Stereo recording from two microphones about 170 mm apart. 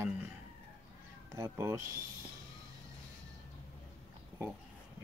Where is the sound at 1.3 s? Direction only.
15° right (ahead or behind).